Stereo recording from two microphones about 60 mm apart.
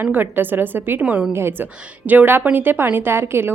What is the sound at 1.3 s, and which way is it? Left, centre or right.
Speech, right.